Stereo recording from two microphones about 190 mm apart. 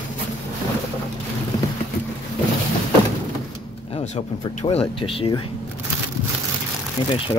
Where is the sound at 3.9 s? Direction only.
30° left (ahead or behind).